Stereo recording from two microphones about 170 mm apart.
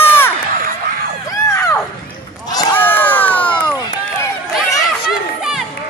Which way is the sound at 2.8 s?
10° left (ahead or behind).